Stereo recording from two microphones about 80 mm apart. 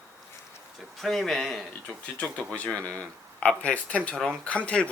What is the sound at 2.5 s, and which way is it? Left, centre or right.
Speech, centre.